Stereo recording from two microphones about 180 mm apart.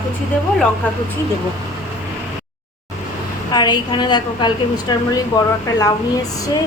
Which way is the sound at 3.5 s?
25° left (ahead or behind).